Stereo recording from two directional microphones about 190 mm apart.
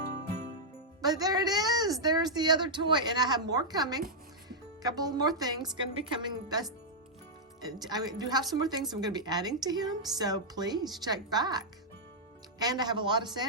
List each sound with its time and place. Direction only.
1.0 s a woman's voice: 20° right (ahead or behind)
7.9 s speech: 20° right (ahead or behind)